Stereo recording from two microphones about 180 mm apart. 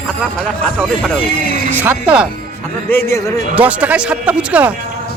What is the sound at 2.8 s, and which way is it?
Speech, 15° left (ahead or behind).